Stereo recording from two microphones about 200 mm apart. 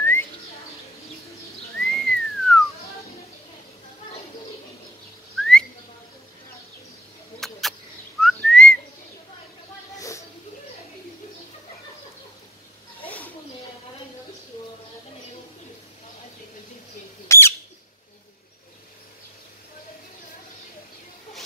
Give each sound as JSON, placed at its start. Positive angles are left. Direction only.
{"t": 0.0, "sound": "bird", "side_deg": 10}
{"t": 1.8, "sound": "whistling", "side_deg": 0}
{"t": 5.4, "sound": "whistling", "side_deg": 5}
{"t": 7.3, "sound": "a sound", "side_deg": 0}
{"t": 8.2, "sound": "whistling", "side_deg": 0}
{"t": 9.9, "sound": "a sound", "side_deg": 15}
{"t": 17.3, "sound": "bird", "side_deg": 15}